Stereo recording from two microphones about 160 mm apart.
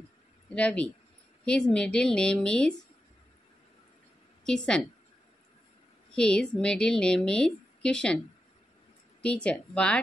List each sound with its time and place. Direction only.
0.6 s a woman's voice: 10° left (ahead or behind)
4.5 s a woman's voice: 5° left (ahead or behind)
6.1 s a woman's voice: 5° left (ahead or behind)
9.2 s speech: 5° left (ahead or behind)